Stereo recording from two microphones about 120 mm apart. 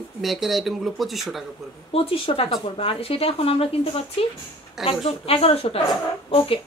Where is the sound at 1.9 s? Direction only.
50° left (ahead or behind).